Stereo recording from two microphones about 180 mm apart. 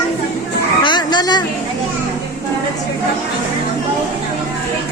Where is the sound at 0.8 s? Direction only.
25° left (ahead or behind).